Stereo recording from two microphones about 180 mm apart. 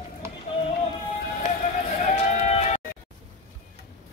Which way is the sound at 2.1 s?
35° left (ahead or behind).